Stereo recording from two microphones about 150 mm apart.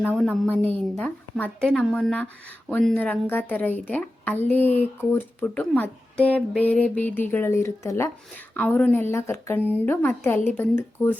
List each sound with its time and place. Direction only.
0.0 s speech: 10° right (ahead or behind)
0.3 s a woman's voice: 10° left (ahead or behind)
9.6 s speech: 10° right (ahead or behind)
9.8 s a woman's voice: 15° left (ahead or behind)